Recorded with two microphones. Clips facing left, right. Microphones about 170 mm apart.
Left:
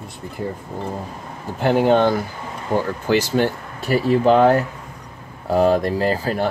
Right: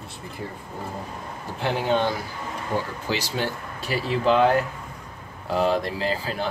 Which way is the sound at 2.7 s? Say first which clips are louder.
Left 7 dB; 40° left (ahead or behind).